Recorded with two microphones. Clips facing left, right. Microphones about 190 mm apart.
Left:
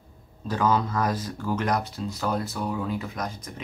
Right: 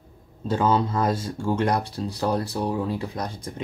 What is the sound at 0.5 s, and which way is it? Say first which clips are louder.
Speech: right 2 dB; 25° right (ahead or behind).